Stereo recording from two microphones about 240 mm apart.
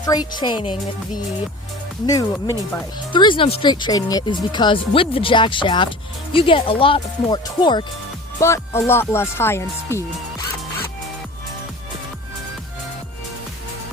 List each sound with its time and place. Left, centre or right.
0.0 s speech: centre
2.0 s speech: centre